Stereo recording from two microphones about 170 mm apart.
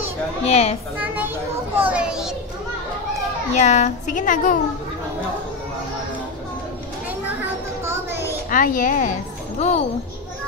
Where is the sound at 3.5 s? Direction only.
40° left (ahead or behind).